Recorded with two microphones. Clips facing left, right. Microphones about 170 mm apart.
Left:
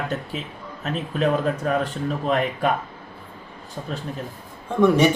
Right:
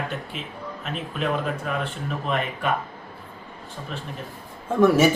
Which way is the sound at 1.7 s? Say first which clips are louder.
Left 5 dB; 40° left (ahead or behind).